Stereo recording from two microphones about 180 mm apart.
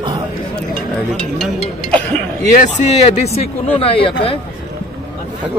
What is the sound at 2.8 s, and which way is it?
Speech, 35° left (ahead or behind).